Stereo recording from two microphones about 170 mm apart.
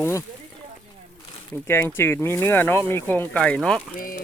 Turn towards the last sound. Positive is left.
turn(degrees=55)  # may be behind; listen again after turning